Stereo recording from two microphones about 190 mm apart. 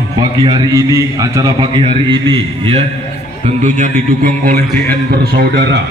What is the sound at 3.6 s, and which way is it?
A man's voice, 40° right (ahead or behind).